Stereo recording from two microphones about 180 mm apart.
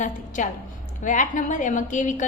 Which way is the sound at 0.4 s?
45° left (ahead or behind).